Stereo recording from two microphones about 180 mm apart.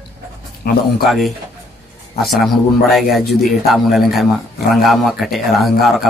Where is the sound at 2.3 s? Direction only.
Centre (ahead or behind).